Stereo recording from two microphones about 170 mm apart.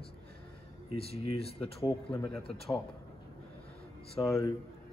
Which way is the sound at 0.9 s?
35° left (ahead or behind).